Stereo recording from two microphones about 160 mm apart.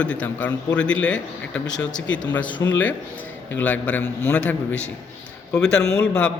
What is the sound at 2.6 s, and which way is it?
Speech, 20° left (ahead or behind).